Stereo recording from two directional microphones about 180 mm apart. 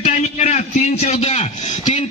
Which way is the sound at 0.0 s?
40° left (ahead or behind).